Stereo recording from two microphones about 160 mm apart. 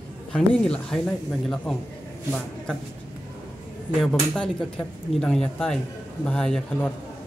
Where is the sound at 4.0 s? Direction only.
5° left (ahead or behind).